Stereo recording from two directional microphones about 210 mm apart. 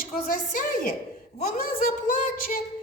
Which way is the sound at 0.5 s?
40° left (ahead or behind).